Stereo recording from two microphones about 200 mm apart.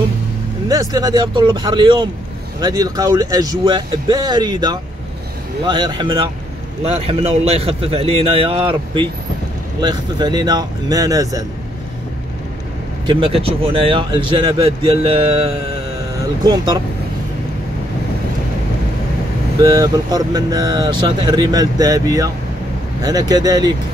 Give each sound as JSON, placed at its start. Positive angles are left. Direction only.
{"t": 0.7, "sound": "speech", "side_deg": -20}
{"t": 13.0, "sound": "speech", "side_deg": -25}
{"t": 19.6, "sound": "speech", "side_deg": -20}